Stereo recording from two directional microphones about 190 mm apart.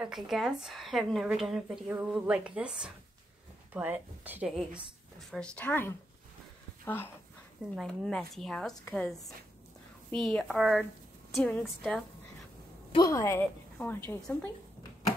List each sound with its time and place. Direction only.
0.0 s a woman's voice: centre (ahead or behind)
7.7 s a woman's voice: 5° left (ahead or behind)
12.9 s a woman's voice: 20° left (ahead or behind)